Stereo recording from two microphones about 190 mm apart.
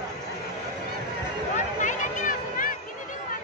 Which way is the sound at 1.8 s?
40° left (ahead or behind).